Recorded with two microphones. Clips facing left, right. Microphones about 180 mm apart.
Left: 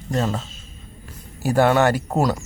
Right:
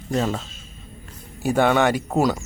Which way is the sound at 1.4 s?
Centre (ahead or behind).